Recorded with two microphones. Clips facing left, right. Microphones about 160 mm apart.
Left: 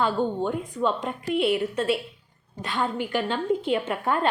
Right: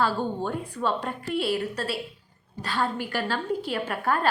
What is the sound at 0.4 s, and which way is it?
A woman's voice, 15° left (ahead or behind).